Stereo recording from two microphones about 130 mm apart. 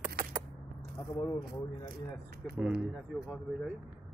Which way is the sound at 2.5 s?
5° right (ahead or behind).